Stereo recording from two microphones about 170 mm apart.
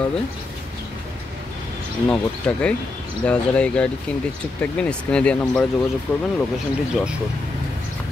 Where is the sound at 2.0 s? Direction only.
10° left (ahead or behind).